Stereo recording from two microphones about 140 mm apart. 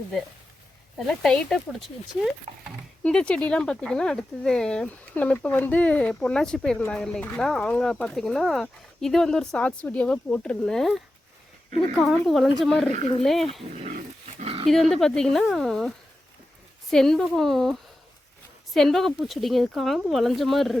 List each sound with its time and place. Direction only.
0.9 s speech: 5° left (ahead or behind)
2.5 s speech: 45° right (ahead or behind)
3.0 s speech: 5° left (ahead or behind)
12.1 s speech: 5° left (ahead or behind)
13.0 s speech: 45° left (ahead or behind)
13.2 s speech: centre (ahead or behind)
13.7 s dog: 55° right (ahead or behind)
14.7 s speech: centre (ahead or behind)